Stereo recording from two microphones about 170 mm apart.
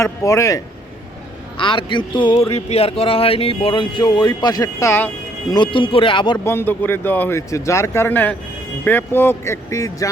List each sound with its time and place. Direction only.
0.0 s speech: 20° left (ahead or behind)
1.5 s speech: 30° left (ahead or behind); by 5.1 s 15° left (ahead or behind)
5.5 s speech: 30° left (ahead or behind)
6.4 s speech: 15° left (ahead or behind)